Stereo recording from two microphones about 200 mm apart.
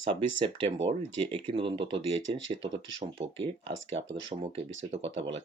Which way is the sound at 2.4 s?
70° right (ahead or behind).